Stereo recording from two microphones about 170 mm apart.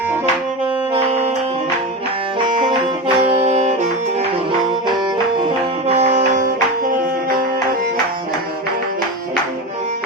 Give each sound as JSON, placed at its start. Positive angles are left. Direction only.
{"t": 2.4, "sound": "music", "side_deg": -25}
{"t": 3.2, "sound": "saxophone", "side_deg": -35}
{"t": 5.9, "sound": "music", "side_deg": -40}